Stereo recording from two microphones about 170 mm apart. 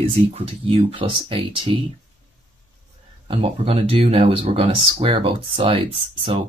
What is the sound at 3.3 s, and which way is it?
Speech, 35° right (ahead or behind).